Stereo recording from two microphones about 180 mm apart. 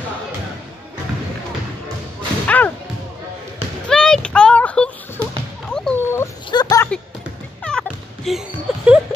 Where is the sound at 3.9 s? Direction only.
5° left (ahead or behind).